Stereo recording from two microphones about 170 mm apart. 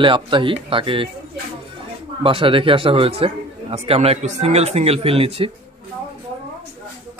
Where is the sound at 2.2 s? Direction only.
30° right (ahead or behind).